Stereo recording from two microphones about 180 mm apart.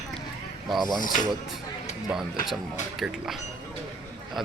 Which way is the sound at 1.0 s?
50° left (ahead or behind).